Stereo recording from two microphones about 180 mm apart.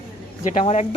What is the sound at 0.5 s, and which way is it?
Speech, 40° left (ahead or behind).